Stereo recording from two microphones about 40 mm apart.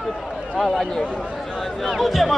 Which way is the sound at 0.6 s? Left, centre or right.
Centre.